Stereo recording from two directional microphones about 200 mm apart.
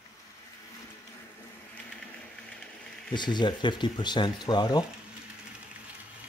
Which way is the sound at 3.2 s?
20° left (ahead or behind).